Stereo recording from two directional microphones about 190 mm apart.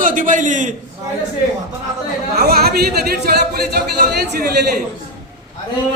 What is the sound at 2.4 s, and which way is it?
Speech, 55° right (ahead or behind).